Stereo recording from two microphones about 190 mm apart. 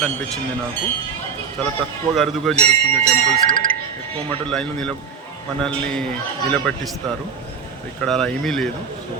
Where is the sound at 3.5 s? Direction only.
45° right (ahead or behind).